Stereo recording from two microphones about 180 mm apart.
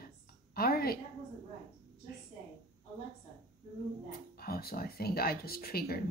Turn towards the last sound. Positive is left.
turn(degrees=60)  # may be behind; listen again after turning